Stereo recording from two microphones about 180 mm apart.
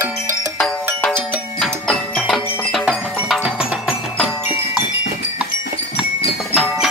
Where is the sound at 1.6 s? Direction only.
5° left (ahead or behind).